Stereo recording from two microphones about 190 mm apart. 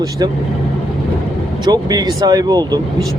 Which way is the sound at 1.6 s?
20° right (ahead or behind).